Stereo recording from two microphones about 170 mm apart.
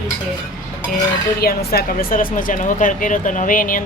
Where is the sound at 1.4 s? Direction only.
65° left (ahead or behind).